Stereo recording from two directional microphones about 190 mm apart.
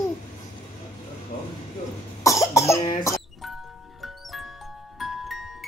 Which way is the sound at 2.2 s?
15° left (ahead or behind).